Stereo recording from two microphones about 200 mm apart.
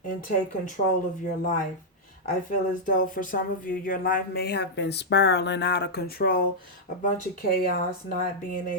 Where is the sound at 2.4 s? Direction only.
40° left (ahead or behind).